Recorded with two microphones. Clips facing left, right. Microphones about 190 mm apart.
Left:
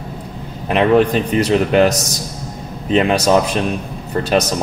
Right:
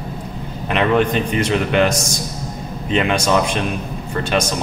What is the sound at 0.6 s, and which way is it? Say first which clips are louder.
Speech: left 4 dB; 35° left (ahead or behind).